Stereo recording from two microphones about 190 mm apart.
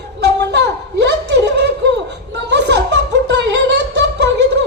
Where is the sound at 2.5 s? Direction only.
60° right (ahead or behind).